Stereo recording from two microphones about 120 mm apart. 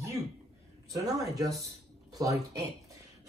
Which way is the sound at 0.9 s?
30° right (ahead or behind).